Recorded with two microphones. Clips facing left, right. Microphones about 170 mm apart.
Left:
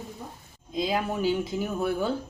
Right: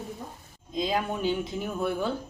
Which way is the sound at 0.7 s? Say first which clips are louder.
Left 1 dB; 5° left (ahead or behind).